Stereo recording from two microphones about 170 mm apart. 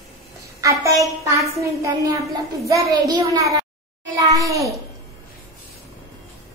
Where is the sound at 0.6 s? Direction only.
20° right (ahead or behind).